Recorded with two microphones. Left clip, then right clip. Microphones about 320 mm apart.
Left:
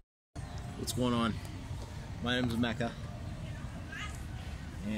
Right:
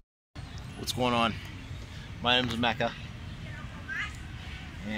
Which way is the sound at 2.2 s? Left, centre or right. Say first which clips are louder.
Right 7 dB; centre.